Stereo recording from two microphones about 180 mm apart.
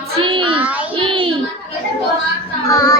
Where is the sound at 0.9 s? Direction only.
30° right (ahead or behind).